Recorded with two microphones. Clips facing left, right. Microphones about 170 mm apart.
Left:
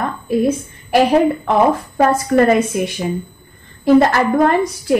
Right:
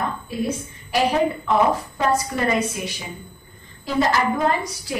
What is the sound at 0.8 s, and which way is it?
A woman's voice, 55° left (ahead or behind).